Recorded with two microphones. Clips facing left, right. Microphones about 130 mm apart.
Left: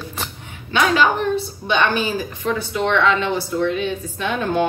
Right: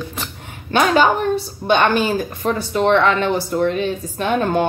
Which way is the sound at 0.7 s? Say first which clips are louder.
Right 3 dB; 40° right (ahead or behind).